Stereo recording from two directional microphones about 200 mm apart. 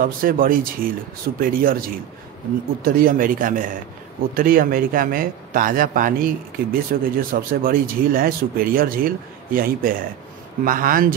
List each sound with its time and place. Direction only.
0.0 s a man's voice: 45° right (ahead or behind)